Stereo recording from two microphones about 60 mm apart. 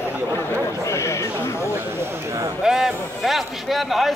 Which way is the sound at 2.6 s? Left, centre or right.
Centre.